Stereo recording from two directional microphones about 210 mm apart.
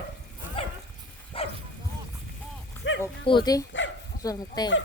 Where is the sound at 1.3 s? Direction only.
25° left (ahead or behind).